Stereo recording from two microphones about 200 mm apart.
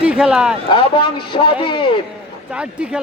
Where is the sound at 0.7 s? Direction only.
25° left (ahead or behind).